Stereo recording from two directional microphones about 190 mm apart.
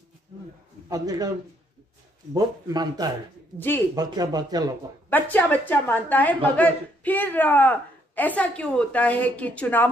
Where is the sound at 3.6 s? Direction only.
10° left (ahead or behind).